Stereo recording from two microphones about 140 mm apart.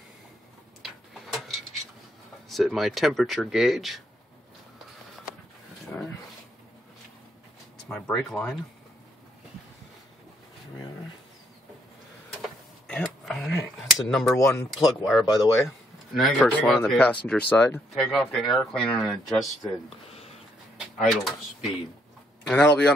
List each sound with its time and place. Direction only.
0.8 s a sound: centre (ahead or behind)
2.5 s speech: centre (ahead or behind)
5.9 s dog: 5° left (ahead or behind)
7.9 s speech: centre (ahead or behind)
12.4 s a sound: centre (ahead or behind)
14.3 s speech: 20° left (ahead or behind)
14.7 s speech: centre (ahead or behind)
15.2 s speech: 25° left (ahead or behind)
16.1 s speech: centre (ahead or behind)
17.9 s speech: 5° left (ahead or behind)
20.8 s speech: centre (ahead or behind)
22.5 s speech: 5° left (ahead or behind)